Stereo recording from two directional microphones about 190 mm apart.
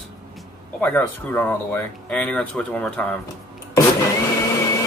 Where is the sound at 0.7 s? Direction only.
10° left (ahead or behind).